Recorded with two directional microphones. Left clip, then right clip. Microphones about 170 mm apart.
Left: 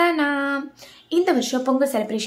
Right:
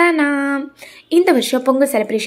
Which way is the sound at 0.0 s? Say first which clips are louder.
Right 5 dB; 15° right (ahead or behind).